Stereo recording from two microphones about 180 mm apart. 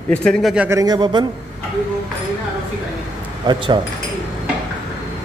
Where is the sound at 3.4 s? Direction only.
25° right (ahead or behind).